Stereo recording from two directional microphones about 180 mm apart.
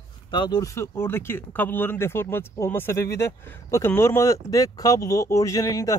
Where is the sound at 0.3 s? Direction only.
25° left (ahead or behind).